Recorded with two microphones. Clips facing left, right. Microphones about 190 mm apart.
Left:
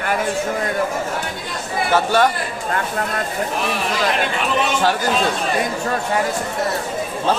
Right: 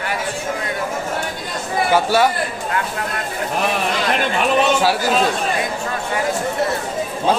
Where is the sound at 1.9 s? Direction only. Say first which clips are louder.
Even; 10° right (ahead or behind).